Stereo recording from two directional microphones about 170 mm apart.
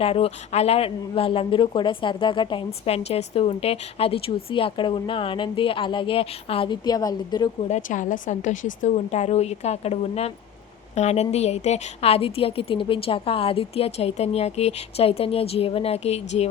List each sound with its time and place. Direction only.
0.0 s a woman's voice: 35° left (ahead or behind)
7.7 s a woman's voice: 50° left (ahead or behind)